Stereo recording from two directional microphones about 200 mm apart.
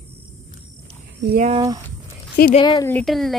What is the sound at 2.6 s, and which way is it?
Speech, 20° left (ahead or behind).